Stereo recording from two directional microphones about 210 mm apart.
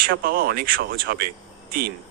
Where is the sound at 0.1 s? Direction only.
45° right (ahead or behind).